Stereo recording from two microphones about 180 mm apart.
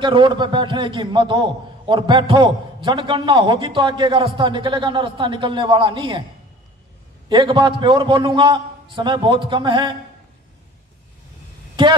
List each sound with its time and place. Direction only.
0.0 s a man's voice: 25° right (ahead or behind)
7.2 s a man's voice: 25° right (ahead or behind)
11.8 s speech: 25° right (ahead or behind)